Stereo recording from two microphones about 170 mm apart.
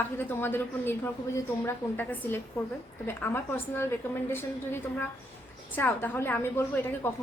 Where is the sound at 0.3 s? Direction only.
10° left (ahead or behind).